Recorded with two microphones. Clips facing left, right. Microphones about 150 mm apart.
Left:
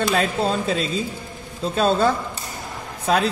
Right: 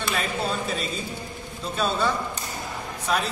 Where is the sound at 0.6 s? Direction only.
90° left.